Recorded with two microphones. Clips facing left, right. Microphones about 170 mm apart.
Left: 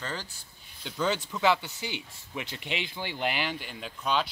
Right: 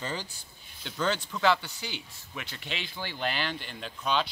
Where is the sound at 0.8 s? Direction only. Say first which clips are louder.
Left 1 dB; centre (ahead or behind).